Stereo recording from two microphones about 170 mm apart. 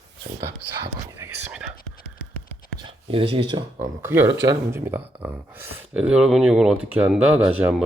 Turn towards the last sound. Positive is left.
turn(degrees=-10)  # may be behind; listen again after turning